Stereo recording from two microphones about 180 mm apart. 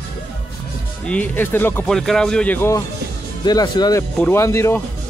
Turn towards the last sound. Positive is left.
turn(degrees=15)  # may be behind; listen again after turning